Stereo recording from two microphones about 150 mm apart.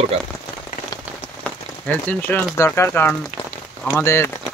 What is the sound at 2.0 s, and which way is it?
Speech, 15° left (ahead or behind).